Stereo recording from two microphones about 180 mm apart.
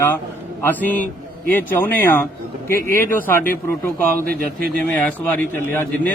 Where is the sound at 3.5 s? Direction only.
10° left (ahead or behind).